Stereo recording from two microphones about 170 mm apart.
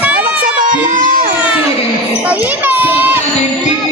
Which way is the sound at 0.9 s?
50° right (ahead or behind).